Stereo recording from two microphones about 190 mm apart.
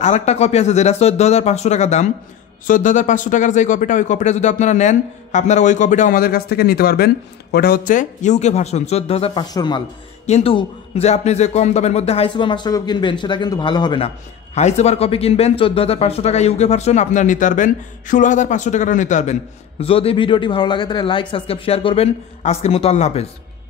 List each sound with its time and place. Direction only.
0.0 s a man's voice: 35° left (ahead or behind); by 9.8 s 20° left (ahead or behind)
10.2 s a man's voice: 35° left (ahead or behind)